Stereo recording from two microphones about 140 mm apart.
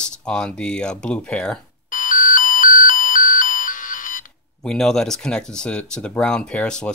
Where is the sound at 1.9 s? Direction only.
75° left (ahead or behind).